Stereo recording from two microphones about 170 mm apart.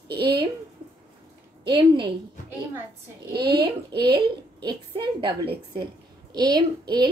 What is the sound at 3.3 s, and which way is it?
Speech, 70° right (ahead or behind).